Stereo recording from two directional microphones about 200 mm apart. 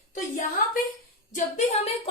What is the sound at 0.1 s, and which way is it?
A woman's voice, 40° left (ahead or behind).